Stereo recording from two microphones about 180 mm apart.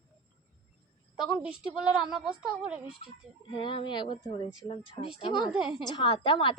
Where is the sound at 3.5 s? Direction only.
25° left (ahead or behind).